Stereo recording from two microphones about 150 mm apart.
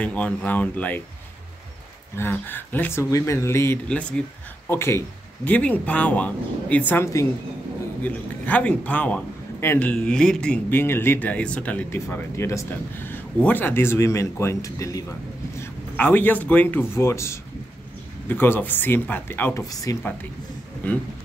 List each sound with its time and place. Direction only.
0.0 s a man's voice: 10° left (ahead or behind)
2.1 s a man's voice: 15° left (ahead or behind)
20.8 s a man's voice: 10° left (ahead or behind)